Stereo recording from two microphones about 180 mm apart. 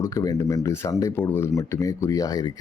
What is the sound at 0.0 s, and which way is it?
Speech, 20° left (ahead or behind).